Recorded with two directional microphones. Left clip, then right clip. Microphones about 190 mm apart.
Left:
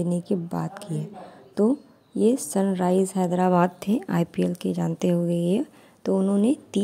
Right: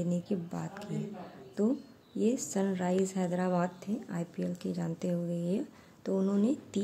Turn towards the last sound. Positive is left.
turn(degrees=30)  # may be behind; listen again after turning